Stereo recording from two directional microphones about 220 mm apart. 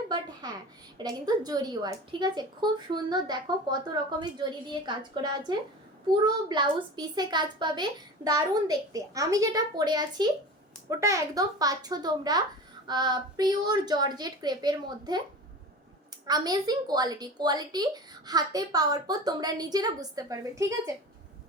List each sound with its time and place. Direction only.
0.4 s a child's voice: 20° right (ahead or behind)
16.2 s a woman's voice: 20° right (ahead or behind)